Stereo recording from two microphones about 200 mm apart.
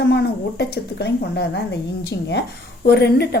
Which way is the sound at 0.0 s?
55° left (ahead or behind).